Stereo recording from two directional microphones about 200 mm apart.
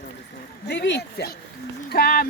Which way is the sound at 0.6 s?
60° left (ahead or behind).